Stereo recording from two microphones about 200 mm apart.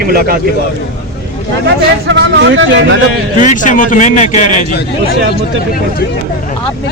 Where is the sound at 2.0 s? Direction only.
65° right (ahead or behind).